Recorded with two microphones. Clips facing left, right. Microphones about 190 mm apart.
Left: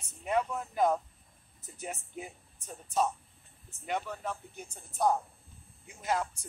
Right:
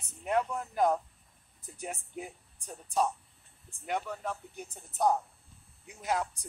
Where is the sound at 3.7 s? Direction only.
10° right (ahead or behind).